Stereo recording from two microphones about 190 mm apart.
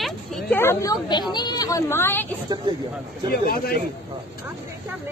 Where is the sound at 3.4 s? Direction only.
50° left (ahead or behind).